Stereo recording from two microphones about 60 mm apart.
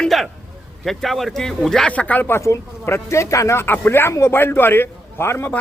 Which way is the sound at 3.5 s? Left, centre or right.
Left.